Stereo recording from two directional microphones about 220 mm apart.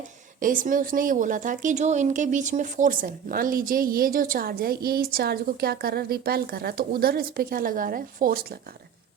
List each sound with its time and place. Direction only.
0.3 s a woman's voice: 40° right (ahead or behind)